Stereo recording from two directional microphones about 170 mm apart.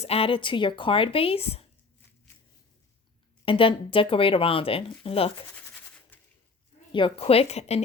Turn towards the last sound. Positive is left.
turn(degrees=40)  # may be behind; listen again after turning